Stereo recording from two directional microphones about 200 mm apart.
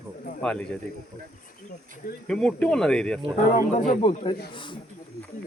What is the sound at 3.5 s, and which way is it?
Speech, 40° left (ahead or behind).